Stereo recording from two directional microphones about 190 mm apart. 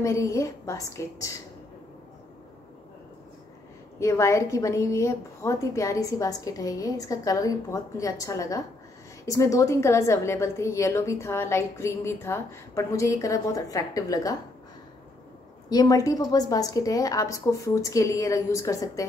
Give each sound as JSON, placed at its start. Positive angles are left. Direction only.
{"t": 0.0, "sound": "a woman's voice", "side_deg": 15}
{"t": 4.0, "sound": "a woman's voice", "side_deg": 15}
{"t": 15.7, "sound": "a woman's voice", "side_deg": 20}